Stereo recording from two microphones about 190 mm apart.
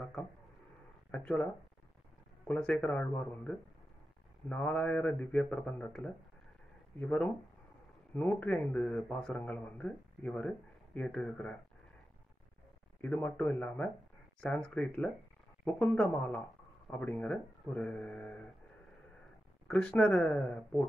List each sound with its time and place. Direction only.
1.1 s a man's voice: 5° left (ahead or behind)
13.0 s a man's voice: 10° left (ahead or behind)
19.7 s a man's voice: 5° left (ahead or behind)